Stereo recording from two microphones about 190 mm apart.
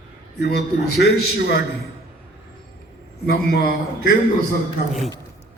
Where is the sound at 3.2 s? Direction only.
55° left (ahead or behind).